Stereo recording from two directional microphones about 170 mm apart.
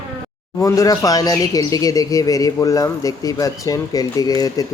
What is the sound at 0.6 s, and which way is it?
Speech, 20° left (ahead or behind).